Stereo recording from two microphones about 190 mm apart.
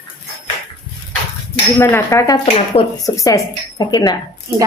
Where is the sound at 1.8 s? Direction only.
15° left (ahead or behind).